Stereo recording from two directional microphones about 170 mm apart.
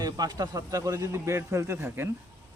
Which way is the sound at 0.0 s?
20° right (ahead or behind).